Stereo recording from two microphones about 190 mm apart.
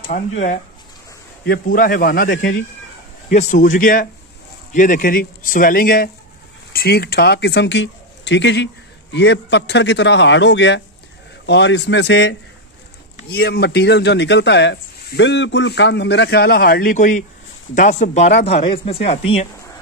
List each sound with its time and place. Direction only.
0.1 s speech: 45° left (ahead or behind)
1.4 s speech: 50° left (ahead or behind)
16.9 s speech: 40° left (ahead or behind)